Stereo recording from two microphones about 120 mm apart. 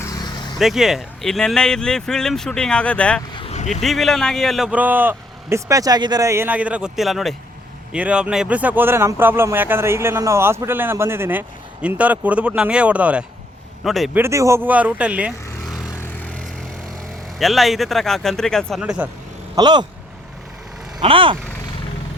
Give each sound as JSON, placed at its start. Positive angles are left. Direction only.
{"t": 0.0, "sound": "vehicle", "side_deg": 30}
{"t": 0.6, "sound": "speech", "side_deg": -5}
{"t": 3.5, "sound": "a sound", "side_deg": 80}
{"t": 3.8, "sound": "speech", "side_deg": 0}
{"t": 4.7, "sound": "speech", "side_deg": -15}
{"t": 13.8, "sound": "speech", "side_deg": 0}
{"t": 14.1, "sound": "speech", "side_deg": -20}
{"t": 17.3, "sound": "speech", "side_deg": 0}
{"t": 18.8, "sound": "speech", "side_deg": -10}
{"t": 19.5, "sound": "speech", "side_deg": -35}
{"t": 21.0, "sound": "speech", "side_deg": -50}